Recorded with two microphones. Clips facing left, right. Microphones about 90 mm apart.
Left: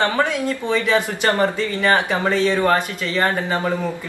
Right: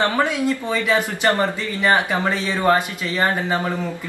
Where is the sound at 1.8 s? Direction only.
15° right (ahead or behind).